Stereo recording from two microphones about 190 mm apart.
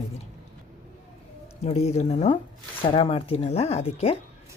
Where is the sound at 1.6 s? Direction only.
35° left (ahead or behind).